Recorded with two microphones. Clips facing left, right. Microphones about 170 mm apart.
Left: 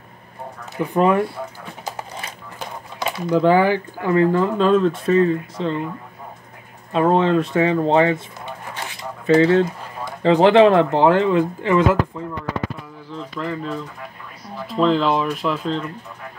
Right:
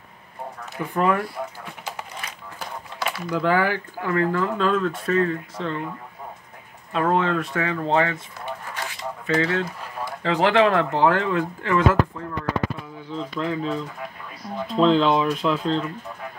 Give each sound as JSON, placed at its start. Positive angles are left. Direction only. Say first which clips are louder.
{"t": 0.9, "sound": "speech", "louder": "left 5 dB", "side_deg": 25}
{"t": 6.9, "sound": "speech", "louder": "left 5 dB", "side_deg": 25}
{"t": 9.2, "sound": "speech", "louder": "left 9 dB", "side_deg": 30}
{"t": 13.4, "sound": "speech", "louder": "right 1 dB", "side_deg": 0}
{"t": 14.8, "sound": "speech", "louder": "even", "side_deg": 5}